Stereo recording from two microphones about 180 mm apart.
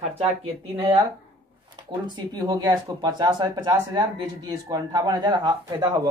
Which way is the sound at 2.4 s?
25° right (ahead or behind).